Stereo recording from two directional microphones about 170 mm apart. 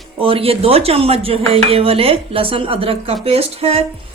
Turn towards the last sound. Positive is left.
turn(degrees=-35)  # may be behind; listen again after turning